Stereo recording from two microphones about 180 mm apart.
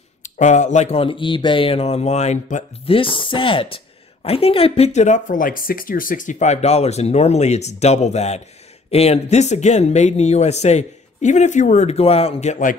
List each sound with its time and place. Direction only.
0.2 s speech: 40° left (ahead or behind)
3.0 s speech: 30° left (ahead or behind)